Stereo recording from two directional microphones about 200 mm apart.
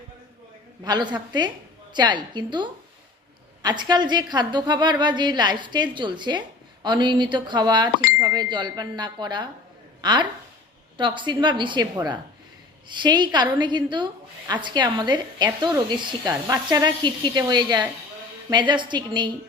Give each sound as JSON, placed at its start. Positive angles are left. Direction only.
{"t": 0.9, "sound": "a woman's voice", "side_deg": -20}